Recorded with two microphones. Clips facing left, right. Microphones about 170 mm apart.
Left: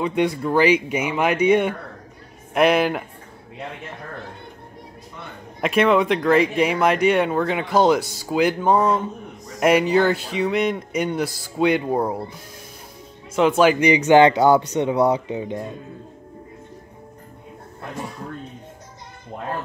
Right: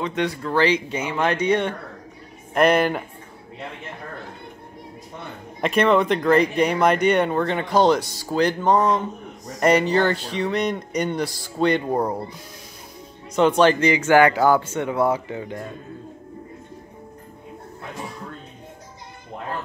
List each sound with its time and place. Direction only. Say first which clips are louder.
0.0 s speech: left 4 dB; 10° left (ahead or behind)
5.6 s speech: left 1 dB; centre (ahead or behind)
13.3 s speech: even; 5° left (ahead or behind)